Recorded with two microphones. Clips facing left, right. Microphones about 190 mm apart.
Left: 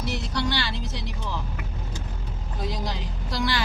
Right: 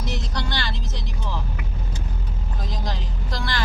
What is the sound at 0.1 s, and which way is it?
Vehicle, 10° left (ahead or behind).